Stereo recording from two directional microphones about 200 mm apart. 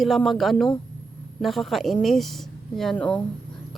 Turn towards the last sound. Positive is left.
turn(degrees=5)  # may be behind; listen again after turning